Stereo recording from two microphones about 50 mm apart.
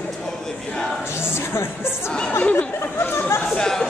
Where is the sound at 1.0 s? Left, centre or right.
Left.